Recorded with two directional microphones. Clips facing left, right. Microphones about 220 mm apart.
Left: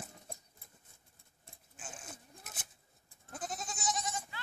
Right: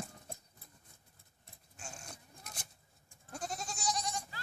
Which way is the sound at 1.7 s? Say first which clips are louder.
Even; 5° left (ahead or behind).